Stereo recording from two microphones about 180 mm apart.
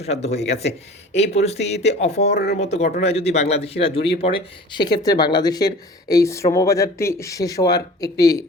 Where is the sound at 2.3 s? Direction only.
65° left (ahead or behind).